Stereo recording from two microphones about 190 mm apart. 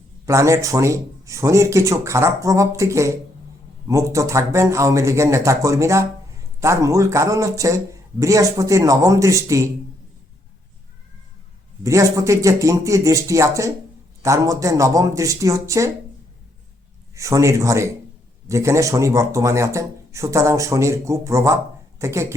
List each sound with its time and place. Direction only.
0.3 s a man's voice: 15° right (ahead or behind)
11.8 s a man's voice: 15° right (ahead or behind)
17.2 s a man's voice: 15° right (ahead or behind)